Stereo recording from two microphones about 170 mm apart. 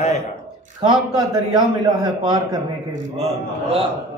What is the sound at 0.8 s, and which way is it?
A man's voice, 25° right (ahead or behind).